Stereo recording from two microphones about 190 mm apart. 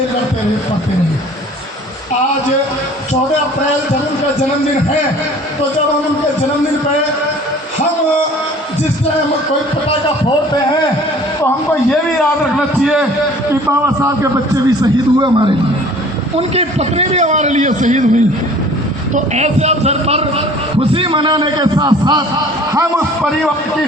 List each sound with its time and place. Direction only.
12.8 s a man's voice: 5° right (ahead or behind)
13.5 s a man's voice: 15° right (ahead or behind)